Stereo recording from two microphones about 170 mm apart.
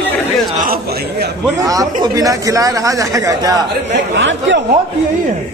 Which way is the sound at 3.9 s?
90° right.